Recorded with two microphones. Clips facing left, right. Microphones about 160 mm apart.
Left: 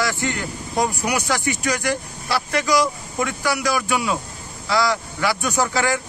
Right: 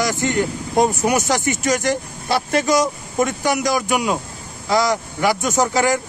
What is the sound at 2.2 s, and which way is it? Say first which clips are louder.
Speech: right 4 dB; 25° right (ahead or behind).